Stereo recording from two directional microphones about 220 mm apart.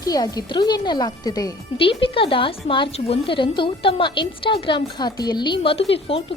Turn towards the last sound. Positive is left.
turn(degrees=25)  # may be behind; listen again after turning